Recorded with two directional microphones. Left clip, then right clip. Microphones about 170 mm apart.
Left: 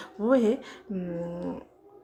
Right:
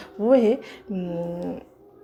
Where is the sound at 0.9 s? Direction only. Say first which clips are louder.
Right 4 dB; 35° right (ahead or behind).